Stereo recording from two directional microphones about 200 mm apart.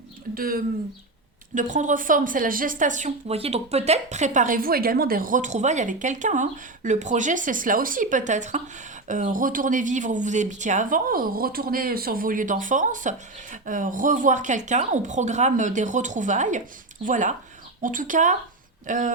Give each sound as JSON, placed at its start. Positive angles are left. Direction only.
{"t": 0.3, "sound": "a woman's voice", "side_deg": -45}